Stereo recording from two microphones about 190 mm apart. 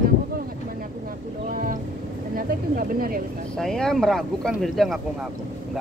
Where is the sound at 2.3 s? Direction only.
50° right (ahead or behind).